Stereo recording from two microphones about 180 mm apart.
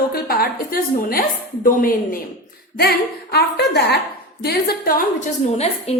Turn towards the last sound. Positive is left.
turn(degrees=40)  # may be behind; listen again after turning